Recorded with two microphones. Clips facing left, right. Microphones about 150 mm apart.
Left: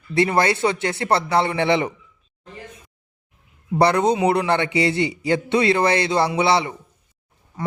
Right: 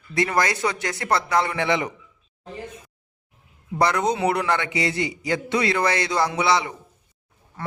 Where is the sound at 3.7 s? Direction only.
30° left (ahead or behind).